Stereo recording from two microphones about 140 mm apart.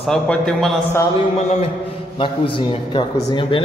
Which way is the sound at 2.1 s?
40° left (ahead or behind).